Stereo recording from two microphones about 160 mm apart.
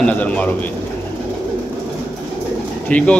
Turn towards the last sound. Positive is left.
turn(degrees=5)  # may be behind; listen again after turning